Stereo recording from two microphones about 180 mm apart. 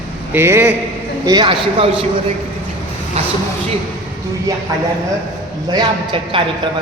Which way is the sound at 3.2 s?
35° right (ahead or behind).